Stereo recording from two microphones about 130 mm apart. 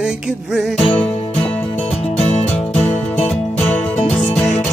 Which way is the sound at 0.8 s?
45° left (ahead or behind).